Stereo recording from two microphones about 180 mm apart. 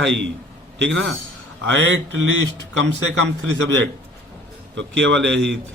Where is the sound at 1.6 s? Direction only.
90° right.